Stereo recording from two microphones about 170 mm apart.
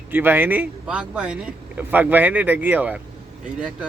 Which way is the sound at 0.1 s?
10° right (ahead or behind).